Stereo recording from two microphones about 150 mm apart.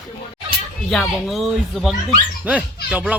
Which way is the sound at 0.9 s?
Centre (ahead or behind).